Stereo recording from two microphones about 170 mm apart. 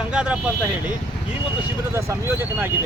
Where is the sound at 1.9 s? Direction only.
15° right (ahead or behind).